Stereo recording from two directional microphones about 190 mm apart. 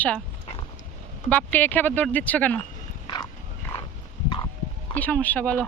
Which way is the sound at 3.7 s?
30° left (ahead or behind).